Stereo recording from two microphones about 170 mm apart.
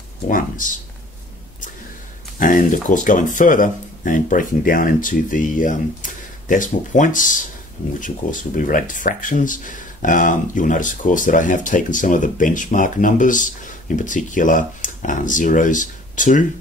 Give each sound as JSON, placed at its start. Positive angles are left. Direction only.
{"t": 0.3, "sound": "speech", "side_deg": 50}
{"t": 2.3, "sound": "speech", "side_deg": 55}